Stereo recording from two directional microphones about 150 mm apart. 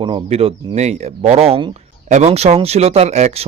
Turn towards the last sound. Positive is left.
turn(degrees=-50)  # may be behind; listen again after turning